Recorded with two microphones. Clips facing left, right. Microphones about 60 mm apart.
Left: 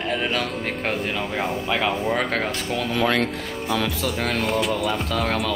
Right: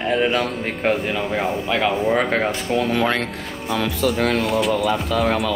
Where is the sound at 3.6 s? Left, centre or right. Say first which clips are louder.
Right 4 dB; centre.